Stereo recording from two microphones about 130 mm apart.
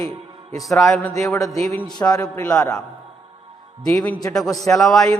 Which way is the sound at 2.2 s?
15° left (ahead or behind).